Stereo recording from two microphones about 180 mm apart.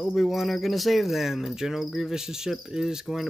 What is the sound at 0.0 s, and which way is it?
Speech, centre (ahead or behind).